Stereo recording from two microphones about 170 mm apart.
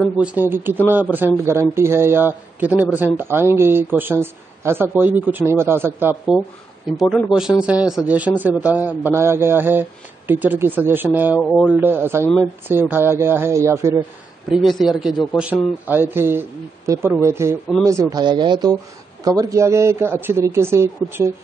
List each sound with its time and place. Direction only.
0.0 s speech: 5° right (ahead or behind)
7.0 s speech: centre (ahead or behind)
11.4 s speech: 5° left (ahead or behind)
11.7 s speech: 10° right (ahead or behind)
14.5 s speech: centre (ahead or behind)
15.9 s speech: 10° right (ahead or behind)